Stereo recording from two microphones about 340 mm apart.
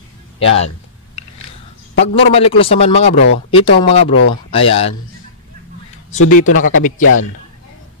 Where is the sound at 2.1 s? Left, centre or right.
Centre.